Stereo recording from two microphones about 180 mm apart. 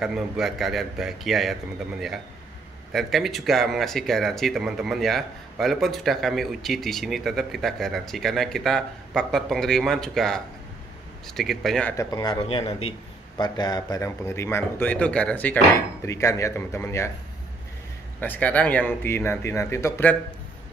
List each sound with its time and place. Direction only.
0.0 s speech: centre (ahead or behind)
12.0 s speech: 20° left (ahead or behind)
12.4 s speech: 30° left (ahead or behind); by 17.1 s 15° left (ahead or behind)
18.2 s speech: 10° left (ahead or behind)